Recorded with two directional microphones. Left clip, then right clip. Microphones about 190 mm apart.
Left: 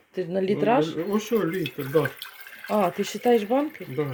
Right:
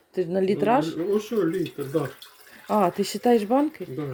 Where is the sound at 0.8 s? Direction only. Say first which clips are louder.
Right 2 dB; 45° left (ahead or behind).